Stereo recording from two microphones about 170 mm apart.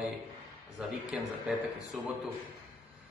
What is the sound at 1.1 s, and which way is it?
Speech, 5° right (ahead or behind).